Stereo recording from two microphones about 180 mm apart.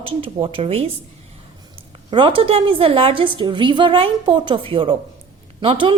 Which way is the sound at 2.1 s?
30° right (ahead or behind).